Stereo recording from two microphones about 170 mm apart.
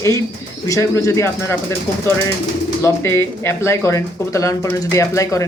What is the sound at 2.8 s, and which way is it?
Speech, 15° left (ahead or behind).